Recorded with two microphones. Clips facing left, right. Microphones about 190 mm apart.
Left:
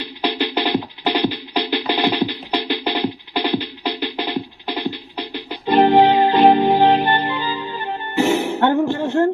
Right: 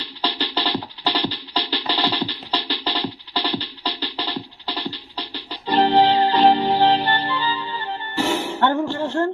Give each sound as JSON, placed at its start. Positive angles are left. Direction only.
{"t": 0.0, "sound": "music", "side_deg": 15}
{"t": 5.1, "sound": "organ", "side_deg": 15}
{"t": 7.4, "sound": "music", "side_deg": 50}
{"t": 8.2, "sound": "music", "side_deg": 20}